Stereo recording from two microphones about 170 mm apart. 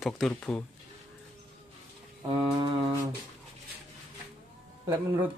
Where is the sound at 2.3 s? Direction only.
30° right (ahead or behind).